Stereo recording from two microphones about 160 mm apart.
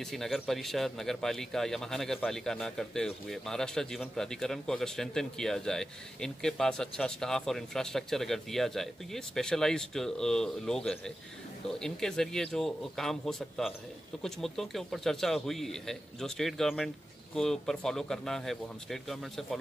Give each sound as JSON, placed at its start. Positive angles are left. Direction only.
{"t": 0.0, "sound": "speech", "side_deg": 0}